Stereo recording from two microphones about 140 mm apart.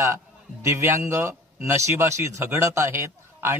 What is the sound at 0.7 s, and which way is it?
A man's voice, 20° right (ahead or behind).